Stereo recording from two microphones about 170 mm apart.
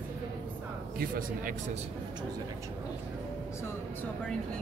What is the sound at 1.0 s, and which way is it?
Speech, 55° right (ahead or behind).